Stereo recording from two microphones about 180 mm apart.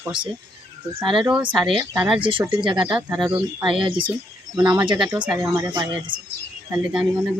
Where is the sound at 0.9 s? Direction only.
30° right (ahead or behind).